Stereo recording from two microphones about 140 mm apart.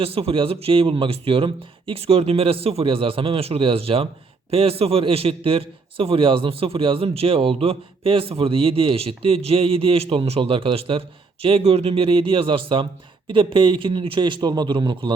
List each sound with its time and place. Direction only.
0.0 s a man's voice: 45° right (ahead or behind)